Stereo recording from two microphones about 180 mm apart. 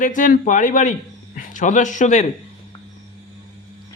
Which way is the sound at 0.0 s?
45° left (ahead or behind).